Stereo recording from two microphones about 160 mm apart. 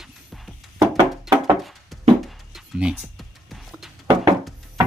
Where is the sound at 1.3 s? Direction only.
Centre (ahead or behind).